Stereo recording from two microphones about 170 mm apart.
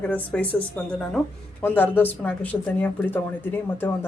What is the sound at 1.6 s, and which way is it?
Speech, 10° left (ahead or behind).